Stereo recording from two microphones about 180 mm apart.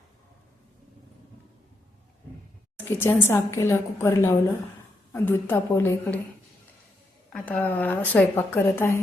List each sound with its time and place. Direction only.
2.7 s speech: 10° left (ahead or behind)
7.4 s speech: 10° left (ahead or behind)